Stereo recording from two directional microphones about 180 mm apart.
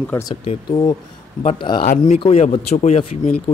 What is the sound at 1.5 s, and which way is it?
A man's voice, 25° left (ahead or behind).